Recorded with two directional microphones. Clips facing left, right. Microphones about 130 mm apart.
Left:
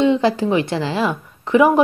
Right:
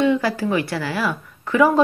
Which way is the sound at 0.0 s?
20° left (ahead or behind).